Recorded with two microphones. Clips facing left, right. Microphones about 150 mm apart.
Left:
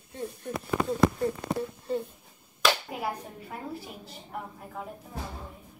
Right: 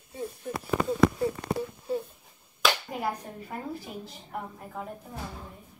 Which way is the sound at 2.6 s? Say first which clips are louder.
Even; centre (ahead or behind).